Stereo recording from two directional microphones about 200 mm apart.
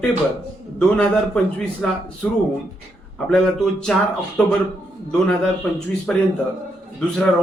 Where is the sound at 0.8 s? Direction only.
5° left (ahead or behind).